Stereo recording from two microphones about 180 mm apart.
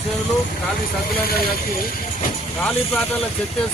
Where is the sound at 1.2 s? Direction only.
55° left (ahead or behind).